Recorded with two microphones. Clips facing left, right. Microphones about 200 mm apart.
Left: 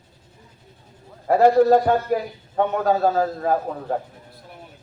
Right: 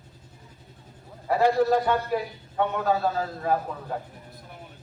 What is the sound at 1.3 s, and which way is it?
A man's voice, 50° left (ahead or behind).